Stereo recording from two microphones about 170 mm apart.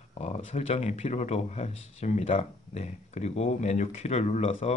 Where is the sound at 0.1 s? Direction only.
40° left (ahead or behind).